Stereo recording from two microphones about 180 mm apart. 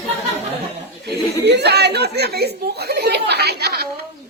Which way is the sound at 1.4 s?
70° right (ahead or behind).